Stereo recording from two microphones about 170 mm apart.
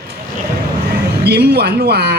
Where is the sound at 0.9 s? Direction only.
70° right (ahead or behind).